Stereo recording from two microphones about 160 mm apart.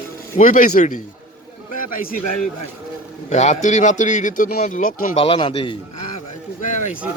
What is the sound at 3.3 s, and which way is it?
A man's voice, 45° left (ahead or behind).